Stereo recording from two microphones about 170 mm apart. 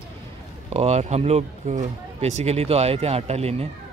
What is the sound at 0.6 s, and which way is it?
Speech, 40° right (ahead or behind).